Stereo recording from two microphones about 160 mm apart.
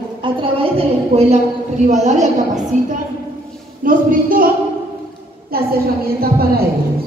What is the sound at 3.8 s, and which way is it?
A woman's voice, 60° right (ahead or behind).